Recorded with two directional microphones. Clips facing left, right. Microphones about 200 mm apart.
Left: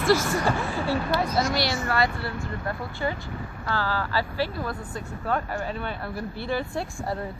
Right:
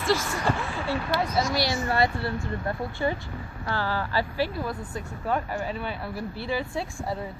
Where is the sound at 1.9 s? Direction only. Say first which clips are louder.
Right 1 dB; 25° right (ahead or behind).